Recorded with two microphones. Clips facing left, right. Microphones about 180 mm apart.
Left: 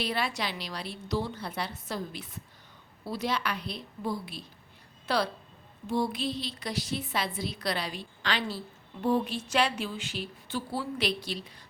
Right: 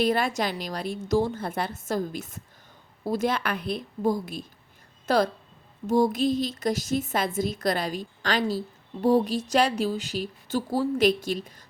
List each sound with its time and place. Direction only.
0.0 s a woman's voice: 45° right (ahead or behind)